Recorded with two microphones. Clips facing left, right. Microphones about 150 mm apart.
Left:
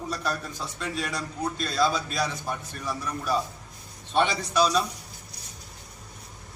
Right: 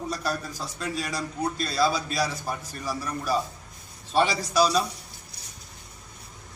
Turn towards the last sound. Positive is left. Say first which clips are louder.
# right 1 dB
turn(degrees=-5)  # may be behind; listen again after turning